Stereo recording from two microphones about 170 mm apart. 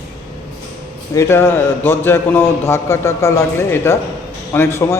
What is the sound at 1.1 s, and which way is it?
A man's voice, 15° left (ahead or behind).